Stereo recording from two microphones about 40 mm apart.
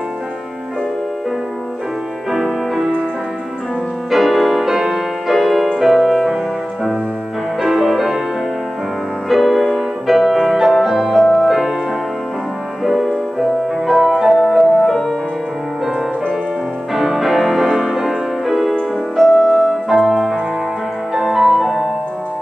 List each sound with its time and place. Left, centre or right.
2.3 s music: centre
4.1 s music: centre
4.6 s music: centre
7.6 s music: centre
9.3 s music: centre
12.8 s music: centre
16.9 s music: centre